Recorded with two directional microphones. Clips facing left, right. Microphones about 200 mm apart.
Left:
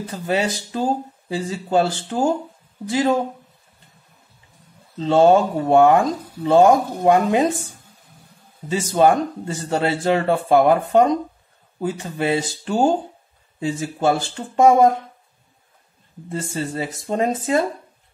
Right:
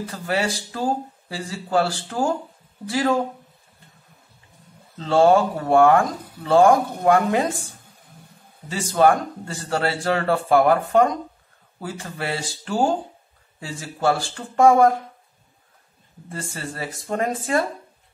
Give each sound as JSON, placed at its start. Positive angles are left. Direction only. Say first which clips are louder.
{"t": 0.0, "sound": "speech", "louder": "left 2 dB", "side_deg": 20}
{"t": 4.9, "sound": "speech", "louder": "left 2 dB", "side_deg": 20}
{"t": 8.6, "sound": "speech", "louder": "left 2 dB", "side_deg": 20}
{"t": 16.3, "sound": "speech", "louder": "left 6 dB", "side_deg": 20}